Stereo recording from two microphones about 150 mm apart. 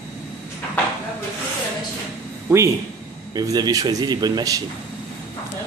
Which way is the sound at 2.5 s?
15° right (ahead or behind).